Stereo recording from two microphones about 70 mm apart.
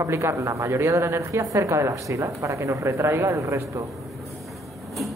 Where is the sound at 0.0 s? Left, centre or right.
Right.